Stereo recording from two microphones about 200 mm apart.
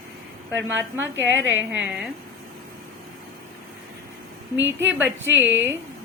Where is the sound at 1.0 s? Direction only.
65° right (ahead or behind).